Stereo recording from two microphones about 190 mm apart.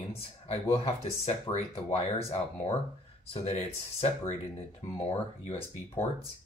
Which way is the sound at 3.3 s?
35° left (ahead or behind).